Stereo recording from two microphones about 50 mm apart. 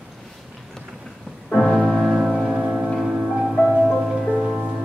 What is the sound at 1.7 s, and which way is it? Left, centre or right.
Music, centre.